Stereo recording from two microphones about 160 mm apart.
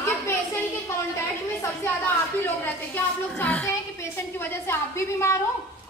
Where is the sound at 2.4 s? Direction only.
10° left (ahead or behind).